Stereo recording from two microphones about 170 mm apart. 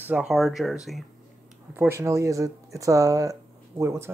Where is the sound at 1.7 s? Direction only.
15° right (ahead or behind).